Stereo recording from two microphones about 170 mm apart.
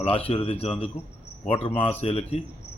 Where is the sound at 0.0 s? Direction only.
35° left (ahead or behind).